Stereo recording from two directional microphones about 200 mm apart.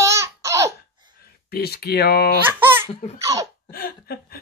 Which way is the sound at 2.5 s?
10° right (ahead or behind).